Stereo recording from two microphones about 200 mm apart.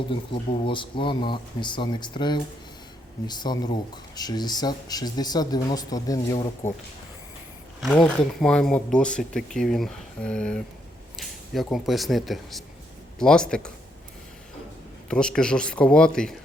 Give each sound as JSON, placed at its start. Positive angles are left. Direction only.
{"t": 0.6, "sound": "speech", "side_deg": 25}
{"t": 7.8, "sound": "speech", "side_deg": 5}
{"t": 15.1, "sound": "speech", "side_deg": 5}